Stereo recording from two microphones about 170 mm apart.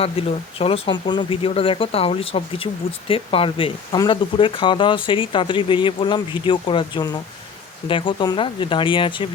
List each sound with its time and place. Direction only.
0.0 s speech: 35° left (ahead or behind)